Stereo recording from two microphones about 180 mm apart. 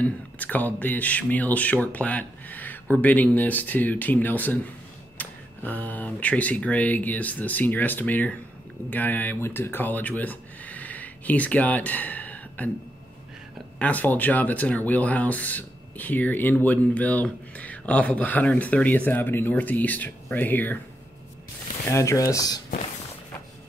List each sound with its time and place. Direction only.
0.0 s speech: 10° left (ahead or behind)
13.7 s speech: 10° left (ahead or behind)
21.9 s speech: 15° left (ahead or behind)